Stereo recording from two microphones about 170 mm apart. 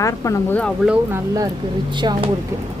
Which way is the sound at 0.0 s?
20° left (ahead or behind).